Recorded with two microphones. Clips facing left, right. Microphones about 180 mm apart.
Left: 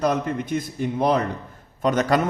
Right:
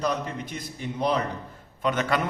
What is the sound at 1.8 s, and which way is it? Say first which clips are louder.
Speech: left 5 dB; 40° left (ahead or behind).